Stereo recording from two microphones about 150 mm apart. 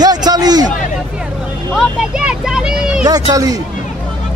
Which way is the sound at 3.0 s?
25° right (ahead or behind).